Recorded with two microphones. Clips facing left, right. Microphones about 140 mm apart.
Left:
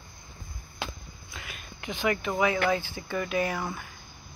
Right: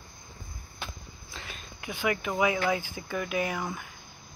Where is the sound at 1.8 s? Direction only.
15° right (ahead or behind).